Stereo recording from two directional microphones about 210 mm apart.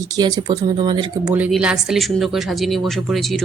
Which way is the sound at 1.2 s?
5° right (ahead or behind).